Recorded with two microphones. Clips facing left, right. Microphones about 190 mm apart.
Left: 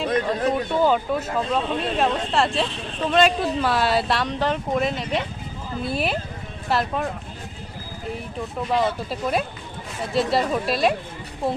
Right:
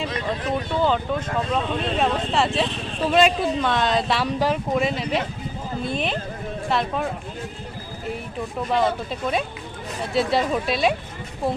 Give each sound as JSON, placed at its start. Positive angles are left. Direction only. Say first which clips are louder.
{"t": 0.8, "sound": "speech", "louder": "left 1 dB", "side_deg": 10}
{"t": 4.2, "sound": "speech", "louder": "right 2 dB", "side_deg": -10}
{"t": 8.7, "sound": "speech", "louder": "right 1 dB", "side_deg": 0}